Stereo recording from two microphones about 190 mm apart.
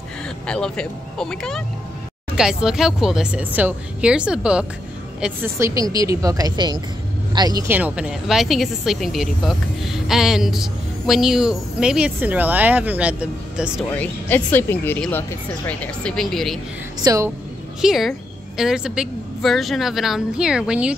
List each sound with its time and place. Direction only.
0.5 s a woman's voice: 5° left (ahead or behind); by 7.7 s 20° right (ahead or behind)
7.7 s speech: 5° right (ahead or behind)
13.9 s speech: 10° left (ahead or behind)
17.0 s speech: 15° right (ahead or behind)
17.8 s speech: centre (ahead or behind)